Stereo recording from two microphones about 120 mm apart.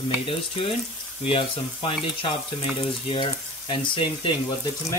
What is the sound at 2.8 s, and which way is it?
Frying, 45° left (ahead or behind).